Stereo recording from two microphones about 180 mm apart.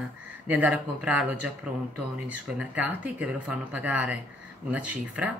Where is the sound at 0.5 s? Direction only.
5° right (ahead or behind).